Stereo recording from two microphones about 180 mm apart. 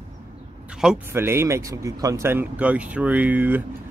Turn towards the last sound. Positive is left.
turn(degrees=-10)  # may be behind; listen again after turning